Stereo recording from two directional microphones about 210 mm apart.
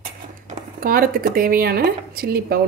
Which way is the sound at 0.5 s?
40° right (ahead or behind).